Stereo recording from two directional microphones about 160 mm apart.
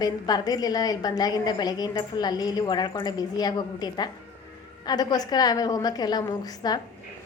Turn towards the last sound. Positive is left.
turn(degrees=25)  # may be behind; listen again after turning